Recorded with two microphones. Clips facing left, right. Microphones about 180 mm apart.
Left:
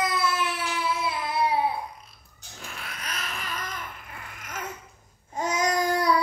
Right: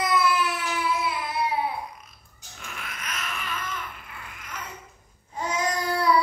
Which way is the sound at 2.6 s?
35° left (ahead or behind).